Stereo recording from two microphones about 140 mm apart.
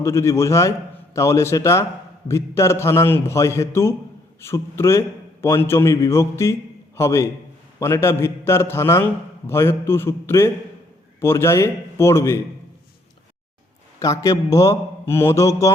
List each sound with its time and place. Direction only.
0.0 s a man's voice: 20° left (ahead or behind)
14.0 s a man's voice: 25° left (ahead or behind)